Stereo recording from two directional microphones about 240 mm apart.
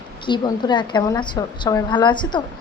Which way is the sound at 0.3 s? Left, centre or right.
Centre.